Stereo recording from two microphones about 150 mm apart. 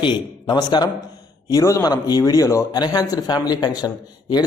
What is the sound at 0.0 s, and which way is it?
A man's voice, 30° left (ahead or behind).